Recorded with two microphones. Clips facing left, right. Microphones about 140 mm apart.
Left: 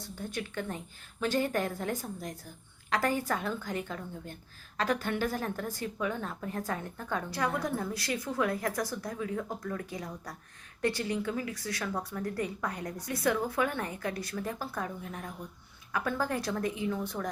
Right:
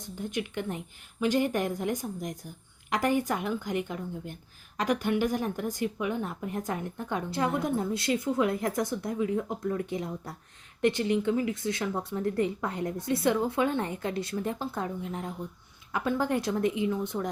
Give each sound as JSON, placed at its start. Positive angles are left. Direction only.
{"t": 0.0, "sound": "a woman's voice", "side_deg": -15}